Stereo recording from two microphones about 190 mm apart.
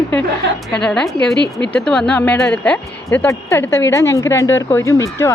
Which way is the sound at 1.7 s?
5° left (ahead or behind).